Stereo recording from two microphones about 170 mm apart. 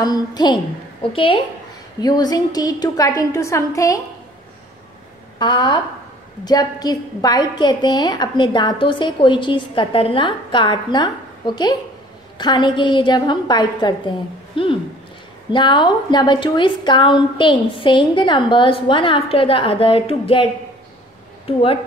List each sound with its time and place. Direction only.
0.0 s a woman's voice: 25° left (ahead or behind)
5.4 s a woman's voice: 25° left (ahead or behind)
21.5 s a woman's voice: 35° left (ahead or behind)